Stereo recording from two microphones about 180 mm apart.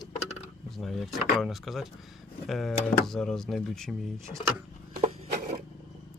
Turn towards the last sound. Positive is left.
turn(degrees=-35)  # may be behind; listen again after turning